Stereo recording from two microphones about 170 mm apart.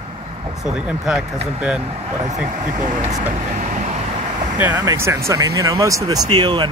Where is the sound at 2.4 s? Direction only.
50° right (ahead or behind).